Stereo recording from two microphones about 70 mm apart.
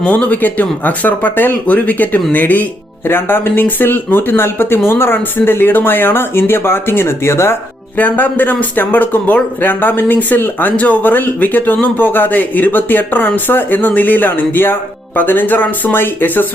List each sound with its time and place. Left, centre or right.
0.0 s speech: left
7.9 s speech: left